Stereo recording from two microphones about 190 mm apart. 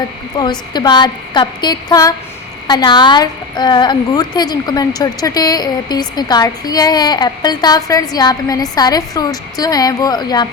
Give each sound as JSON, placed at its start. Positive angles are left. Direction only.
{"t": 0.3, "sound": "a woman's voice", "side_deg": 20}